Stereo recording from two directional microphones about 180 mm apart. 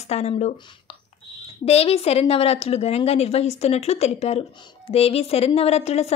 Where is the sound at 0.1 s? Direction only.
35° left (ahead or behind).